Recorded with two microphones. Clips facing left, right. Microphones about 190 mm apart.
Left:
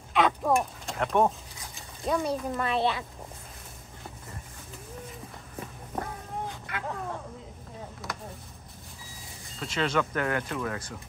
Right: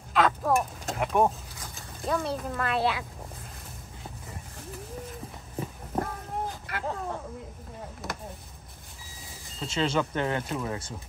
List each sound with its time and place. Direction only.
0.1 s speech: centre (ahead or behind)
5.9 s a sound: 35° right (ahead or behind)
9.6 s speech: 30° right (ahead or behind)